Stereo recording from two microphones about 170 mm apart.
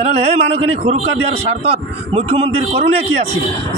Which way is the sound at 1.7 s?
35° right (ahead or behind).